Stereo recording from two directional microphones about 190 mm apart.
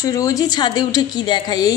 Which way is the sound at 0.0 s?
15° left (ahead or behind).